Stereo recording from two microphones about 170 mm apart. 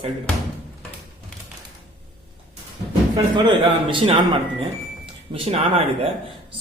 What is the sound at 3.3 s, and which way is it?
Speech, 30° right (ahead or behind).